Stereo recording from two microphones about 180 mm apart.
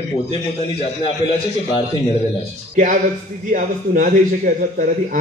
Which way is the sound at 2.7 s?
50° right (ahead or behind).